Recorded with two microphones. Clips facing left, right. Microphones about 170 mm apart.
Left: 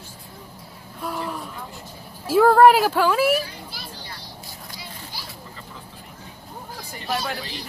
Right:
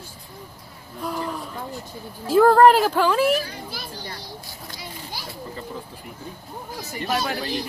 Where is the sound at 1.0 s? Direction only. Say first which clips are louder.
Right 1 dB; centre (ahead or behind).